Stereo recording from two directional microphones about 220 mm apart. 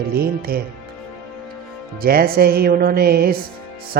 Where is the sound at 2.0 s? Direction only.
45° right (ahead or behind).